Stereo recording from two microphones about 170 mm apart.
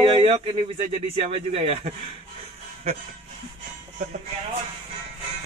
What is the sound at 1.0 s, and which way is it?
Speech, 35° right (ahead or behind).